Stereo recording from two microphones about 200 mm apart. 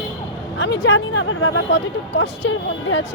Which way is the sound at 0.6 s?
60° left (ahead or behind).